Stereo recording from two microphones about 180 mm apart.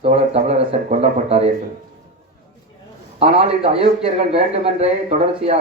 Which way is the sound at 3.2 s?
35° right (ahead or behind).